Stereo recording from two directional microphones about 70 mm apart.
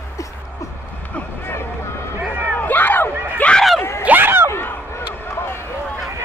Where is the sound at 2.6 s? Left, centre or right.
Left.